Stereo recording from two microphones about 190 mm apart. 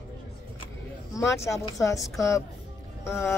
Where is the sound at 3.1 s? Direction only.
15° left (ahead or behind).